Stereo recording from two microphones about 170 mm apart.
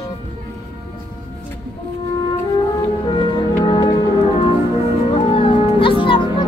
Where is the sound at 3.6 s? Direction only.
30° left (ahead or behind).